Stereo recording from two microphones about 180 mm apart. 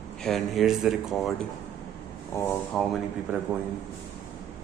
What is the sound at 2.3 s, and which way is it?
Speech, 5° left (ahead or behind).